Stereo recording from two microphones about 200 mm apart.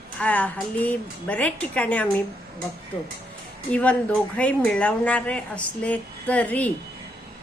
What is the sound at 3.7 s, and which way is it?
Speech, 5° left (ahead or behind).